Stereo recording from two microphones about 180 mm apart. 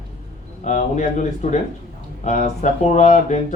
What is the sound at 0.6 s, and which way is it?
A man's voice, 40° left (ahead or behind).